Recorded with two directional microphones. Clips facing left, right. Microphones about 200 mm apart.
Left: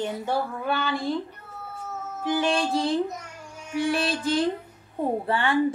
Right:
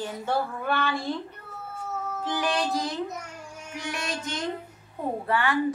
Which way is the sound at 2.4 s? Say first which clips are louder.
Left 3 dB; 25° left (ahead or behind).